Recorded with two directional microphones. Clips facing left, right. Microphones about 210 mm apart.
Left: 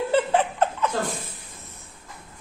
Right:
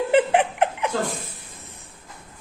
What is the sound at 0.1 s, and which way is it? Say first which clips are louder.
Laughter: right 4 dB; 15° right (ahead or behind).